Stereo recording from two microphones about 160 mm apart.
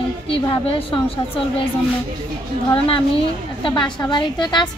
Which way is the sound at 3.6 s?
30° left (ahead or behind).